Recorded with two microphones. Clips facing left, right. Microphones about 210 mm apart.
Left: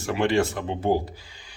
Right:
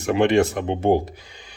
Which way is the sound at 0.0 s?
20° right (ahead or behind).